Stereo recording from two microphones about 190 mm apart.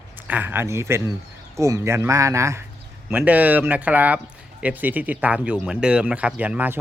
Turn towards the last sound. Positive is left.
turn(degrees=-10)  # may be behind; listen again after turning